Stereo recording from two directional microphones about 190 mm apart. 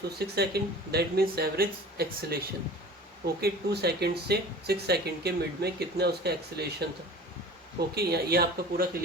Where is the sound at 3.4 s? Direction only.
60° right (ahead or behind).